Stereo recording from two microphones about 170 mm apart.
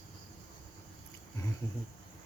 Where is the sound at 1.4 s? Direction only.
20° left (ahead or behind).